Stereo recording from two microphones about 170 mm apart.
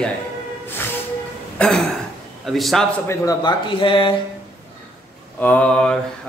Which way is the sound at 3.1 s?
20° left (ahead or behind).